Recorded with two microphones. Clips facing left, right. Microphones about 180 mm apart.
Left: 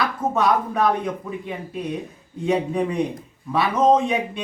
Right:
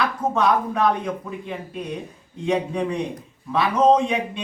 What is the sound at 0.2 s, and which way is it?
Speech, 10° right (ahead or behind).